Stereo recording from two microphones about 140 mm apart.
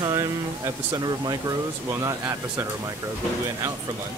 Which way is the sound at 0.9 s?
30° right (ahead or behind).